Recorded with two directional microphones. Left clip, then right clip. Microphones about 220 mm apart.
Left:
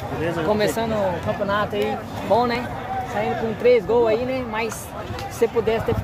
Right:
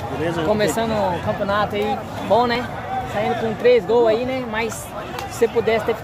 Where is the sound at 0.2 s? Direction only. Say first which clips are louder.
Right 2 dB; 15° right (ahead or behind).